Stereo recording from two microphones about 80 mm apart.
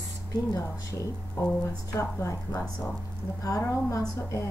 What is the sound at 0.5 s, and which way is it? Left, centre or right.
Speech, left.